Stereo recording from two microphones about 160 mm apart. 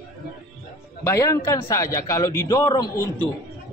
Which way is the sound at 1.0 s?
20° left (ahead or behind).